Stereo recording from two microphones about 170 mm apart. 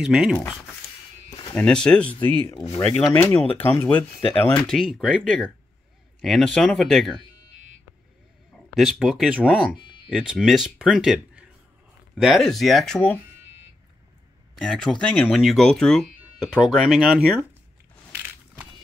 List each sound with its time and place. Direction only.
0.0 s speech: 5° right (ahead or behind)
1.5 s speech: 5° left (ahead or behind)
8.7 s speech: 5° right (ahead or behind)
14.7 s speech: 5° left (ahead or behind)